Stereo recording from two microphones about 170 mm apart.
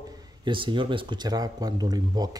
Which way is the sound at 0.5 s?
30° right (ahead or behind).